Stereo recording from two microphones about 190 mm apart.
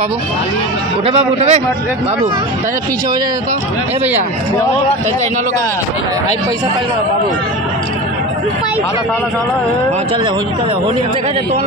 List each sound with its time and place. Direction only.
1.0 s a man's voice: 30° right (ahead or behind)